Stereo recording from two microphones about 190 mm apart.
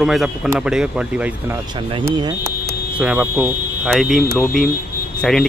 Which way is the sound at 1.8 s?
25° right (ahead or behind).